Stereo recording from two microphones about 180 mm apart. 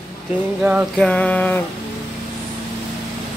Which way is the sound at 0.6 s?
10° right (ahead or behind).